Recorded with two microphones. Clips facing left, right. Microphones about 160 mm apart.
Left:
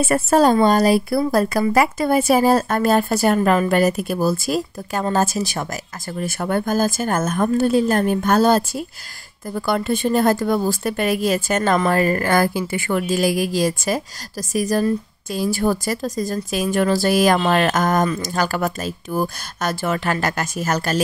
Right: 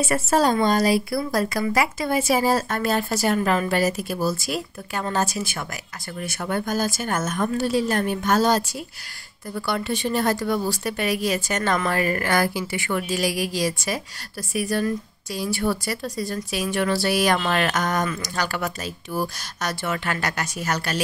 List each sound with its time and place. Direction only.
0.0 s speech: 55° left (ahead or behind)
3.3 s speech: 40° left (ahead or behind)
6.2 s speech: 50° left (ahead or behind)
11.7 s speech: 35° left (ahead or behind)